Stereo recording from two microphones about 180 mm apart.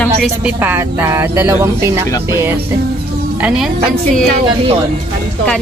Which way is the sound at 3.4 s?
5° right (ahead or behind).